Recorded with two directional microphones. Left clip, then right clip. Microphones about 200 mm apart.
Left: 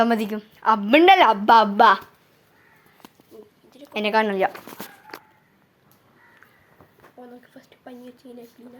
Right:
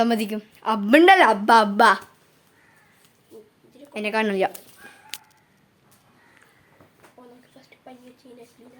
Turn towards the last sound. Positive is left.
turn(degrees=40)  # may be behind; listen again after turning